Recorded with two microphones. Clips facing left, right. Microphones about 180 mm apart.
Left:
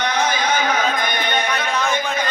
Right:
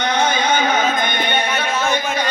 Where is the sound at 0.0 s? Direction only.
30° right (ahead or behind).